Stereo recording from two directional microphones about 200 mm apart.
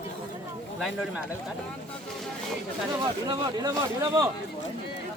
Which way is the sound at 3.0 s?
20° right (ahead or behind).